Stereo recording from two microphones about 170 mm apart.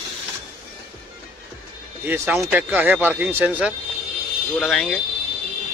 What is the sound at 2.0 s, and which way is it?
A man's voice, 10° right (ahead or behind).